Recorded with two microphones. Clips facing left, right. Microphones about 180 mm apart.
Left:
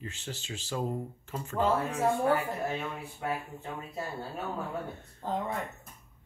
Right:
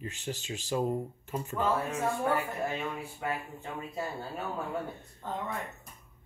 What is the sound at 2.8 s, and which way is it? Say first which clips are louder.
Speech: right 1 dB; centre (ahead or behind).